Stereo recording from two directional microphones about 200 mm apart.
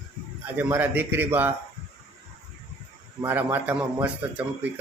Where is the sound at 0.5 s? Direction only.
10° right (ahead or behind).